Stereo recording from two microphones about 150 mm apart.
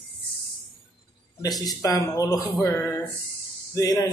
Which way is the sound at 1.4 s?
25° left (ahead or behind).